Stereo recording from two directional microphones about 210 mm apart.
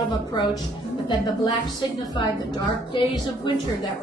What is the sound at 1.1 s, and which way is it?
Speech, 20° left (ahead or behind).